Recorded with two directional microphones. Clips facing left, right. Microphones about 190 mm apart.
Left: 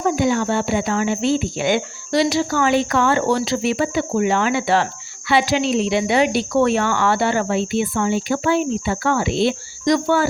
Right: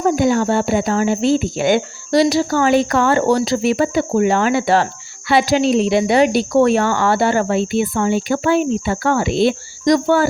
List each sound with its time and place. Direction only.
0.0 s speech: 45° right (ahead or behind)